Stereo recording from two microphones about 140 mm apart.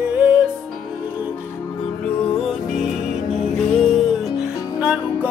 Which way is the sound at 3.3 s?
55° left (ahead or behind).